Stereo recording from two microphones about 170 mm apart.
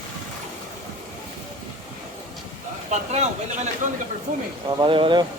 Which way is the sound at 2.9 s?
40° right (ahead or behind).